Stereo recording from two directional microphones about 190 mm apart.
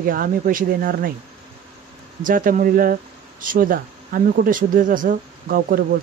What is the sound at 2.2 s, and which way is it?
Speech, 45° right (ahead or behind).